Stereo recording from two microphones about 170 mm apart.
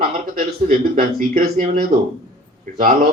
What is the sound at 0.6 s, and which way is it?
Speech, 55° right (ahead or behind).